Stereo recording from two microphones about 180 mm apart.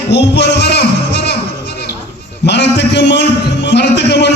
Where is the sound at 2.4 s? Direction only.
70° left (ahead or behind).